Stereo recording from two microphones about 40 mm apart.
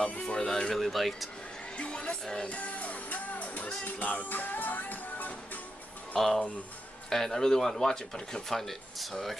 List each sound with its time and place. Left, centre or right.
0.0 s a sound: left
0.5 s music: centre
0.7 s speech: centre
1.8 s music: left
2.4 s music: left
6.1 s speech: centre